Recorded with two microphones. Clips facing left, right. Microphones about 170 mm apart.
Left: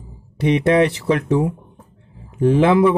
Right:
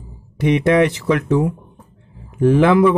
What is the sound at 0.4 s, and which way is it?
Speech, 30° left (ahead or behind).